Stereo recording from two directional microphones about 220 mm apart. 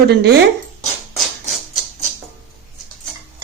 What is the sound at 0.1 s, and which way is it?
Speech, 45° right (ahead or behind).